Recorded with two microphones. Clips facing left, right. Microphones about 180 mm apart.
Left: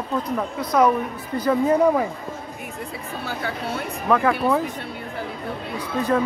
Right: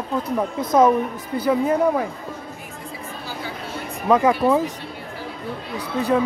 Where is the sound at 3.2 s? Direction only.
60° left (ahead or behind).